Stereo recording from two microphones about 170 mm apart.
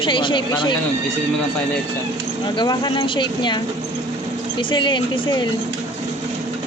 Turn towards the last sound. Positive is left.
turn(degrees=30)  # may be behind; listen again after turning